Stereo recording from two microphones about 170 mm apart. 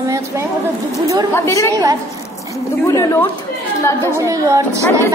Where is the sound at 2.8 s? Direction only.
20° left (ahead or behind).